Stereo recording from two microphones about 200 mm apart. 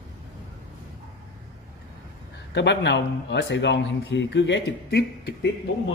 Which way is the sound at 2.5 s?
60° left (ahead or behind).